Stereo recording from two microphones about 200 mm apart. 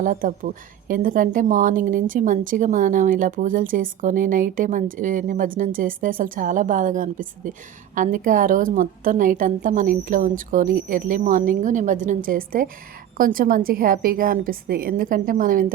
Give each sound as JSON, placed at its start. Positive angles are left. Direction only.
{"t": 0.0, "sound": "a woman's voice", "side_deg": -40}